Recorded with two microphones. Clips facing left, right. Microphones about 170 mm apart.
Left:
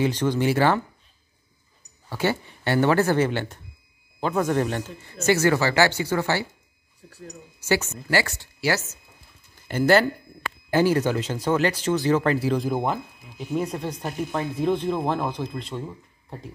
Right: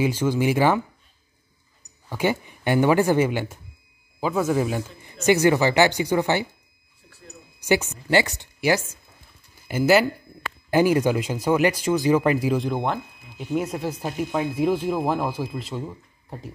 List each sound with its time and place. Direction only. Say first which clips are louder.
0.0 s speech: right 1 dB; 10° right (ahead or behind)
2.0 s speech: right 1 dB; 15° right (ahead or behind)
7.1 s a sound: left 6 dB; 40° left (ahead or behind)
7.6 s speech: right 2 dB; 15° right (ahead or behind)
12.5 s speech: even; 5° left (ahead or behind)